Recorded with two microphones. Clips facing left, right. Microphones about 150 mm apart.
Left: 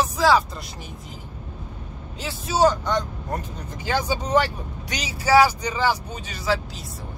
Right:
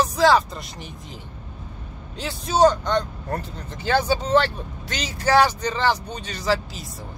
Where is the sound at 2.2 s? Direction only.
5° left (ahead or behind).